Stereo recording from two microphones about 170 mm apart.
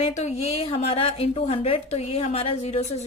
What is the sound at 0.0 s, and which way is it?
A woman's voice, 40° left (ahead or behind).